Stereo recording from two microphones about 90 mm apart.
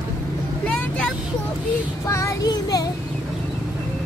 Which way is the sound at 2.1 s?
35° left (ahead or behind).